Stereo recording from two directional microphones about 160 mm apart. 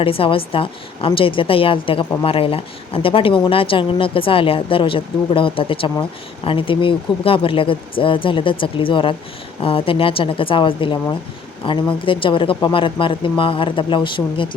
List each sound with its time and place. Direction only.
0.0 s speech: 35° left (ahead or behind)